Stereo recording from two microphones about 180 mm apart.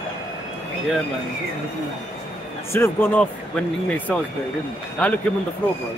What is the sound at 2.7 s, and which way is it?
Speech, 10° left (ahead or behind).